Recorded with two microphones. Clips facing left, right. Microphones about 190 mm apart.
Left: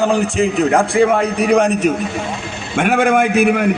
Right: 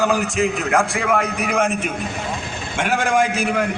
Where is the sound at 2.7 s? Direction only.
55° left (ahead or behind).